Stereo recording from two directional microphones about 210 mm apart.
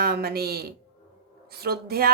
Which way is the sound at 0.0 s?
45° right (ahead or behind).